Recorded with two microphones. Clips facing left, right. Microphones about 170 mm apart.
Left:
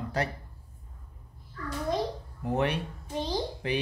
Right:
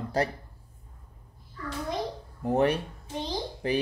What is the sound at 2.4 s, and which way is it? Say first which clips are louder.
Speech: right 4 dB; 40° right (ahead or behind).